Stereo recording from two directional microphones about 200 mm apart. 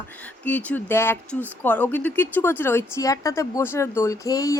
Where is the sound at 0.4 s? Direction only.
10° left (ahead or behind).